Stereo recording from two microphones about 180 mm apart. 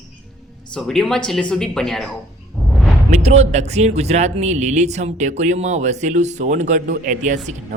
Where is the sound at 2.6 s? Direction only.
Centre (ahead or behind).